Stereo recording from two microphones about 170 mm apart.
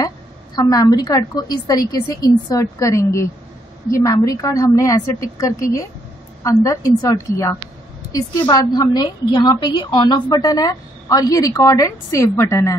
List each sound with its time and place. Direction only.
0.6 s a woman's voice: 20° left (ahead or behind)